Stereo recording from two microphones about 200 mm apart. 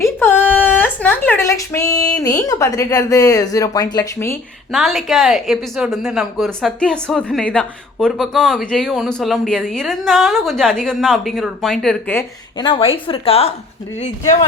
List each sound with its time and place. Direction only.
0.0 s speech: 10° left (ahead or behind)
4.7 s a woman's voice: centre (ahead or behind)
12.5 s a woman's voice: 25° left (ahead or behind)